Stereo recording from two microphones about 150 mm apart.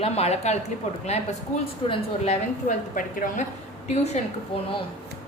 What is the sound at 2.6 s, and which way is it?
Speech, 60° left (ahead or behind).